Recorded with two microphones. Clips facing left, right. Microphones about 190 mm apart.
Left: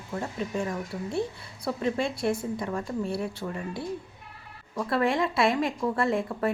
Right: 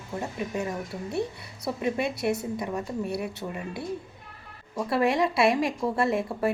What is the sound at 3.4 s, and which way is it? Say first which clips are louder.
Speech: left 1 dB; 15° right (ahead or behind).